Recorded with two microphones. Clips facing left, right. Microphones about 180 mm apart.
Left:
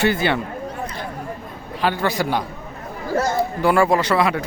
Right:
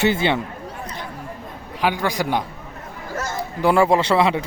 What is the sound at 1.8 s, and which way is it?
Speech, 15° right (ahead or behind).